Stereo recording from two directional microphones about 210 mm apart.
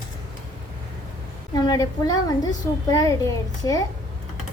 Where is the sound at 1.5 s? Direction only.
15° left (ahead or behind).